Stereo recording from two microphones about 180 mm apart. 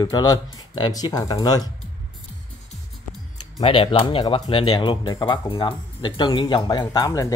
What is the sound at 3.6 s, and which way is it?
Speech, 30° left (ahead or behind).